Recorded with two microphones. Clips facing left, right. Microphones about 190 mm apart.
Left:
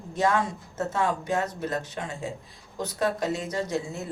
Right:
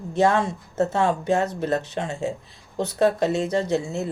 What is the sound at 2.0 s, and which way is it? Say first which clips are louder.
A woman's voice: right 6 dB; 25° right (ahead or behind).